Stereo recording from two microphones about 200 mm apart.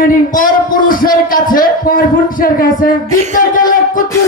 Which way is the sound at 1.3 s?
45° left (ahead or behind).